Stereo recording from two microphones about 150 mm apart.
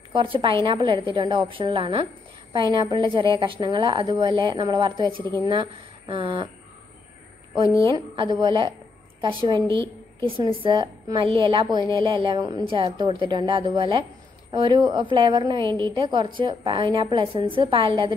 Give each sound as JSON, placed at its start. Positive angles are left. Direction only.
{"t": 0.1, "sound": "a woman's voice", "side_deg": -35}
{"t": 7.9, "sound": "a woman's voice", "side_deg": -30}